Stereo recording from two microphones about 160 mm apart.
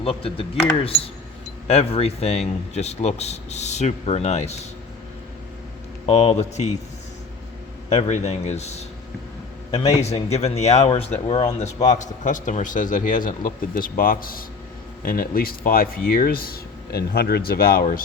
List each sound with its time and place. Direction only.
0.0 s speech: 35° left (ahead or behind)
1.6 s speech: 40° left (ahead or behind)
6.1 s speech: 40° left (ahead or behind)
7.9 s speech: 45° left (ahead or behind); by 18.0 s 65° left (ahead or behind)